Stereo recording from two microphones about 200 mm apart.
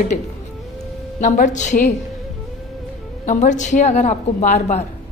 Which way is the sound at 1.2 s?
40° left (ahead or behind).